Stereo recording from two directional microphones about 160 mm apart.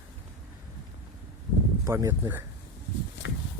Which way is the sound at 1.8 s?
20° right (ahead or behind).